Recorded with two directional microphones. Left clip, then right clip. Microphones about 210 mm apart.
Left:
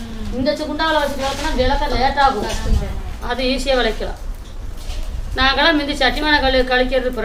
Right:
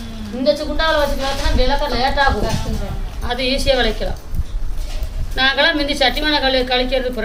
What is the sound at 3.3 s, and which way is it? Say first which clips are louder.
Speech: right 1 dB; 10° left (ahead or behind).